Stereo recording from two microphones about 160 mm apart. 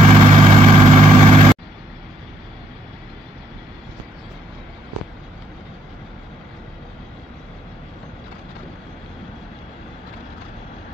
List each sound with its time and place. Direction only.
0.0 s vehicle: 35° right (ahead or behind)